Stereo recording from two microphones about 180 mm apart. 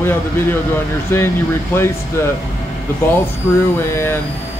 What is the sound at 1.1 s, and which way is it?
Speech, 15° left (ahead or behind).